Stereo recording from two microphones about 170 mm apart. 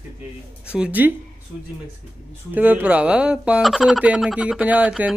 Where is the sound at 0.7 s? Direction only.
10° right (ahead or behind).